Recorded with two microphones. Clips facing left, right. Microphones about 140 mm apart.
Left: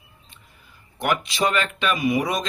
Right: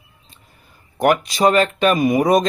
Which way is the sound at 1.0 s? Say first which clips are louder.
Right 7 dB; 45° right (ahead or behind).